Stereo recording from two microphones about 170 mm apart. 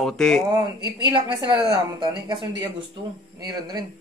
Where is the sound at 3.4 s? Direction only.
25° right (ahead or behind).